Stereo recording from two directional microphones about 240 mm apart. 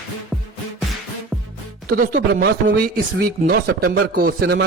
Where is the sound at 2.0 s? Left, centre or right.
Right.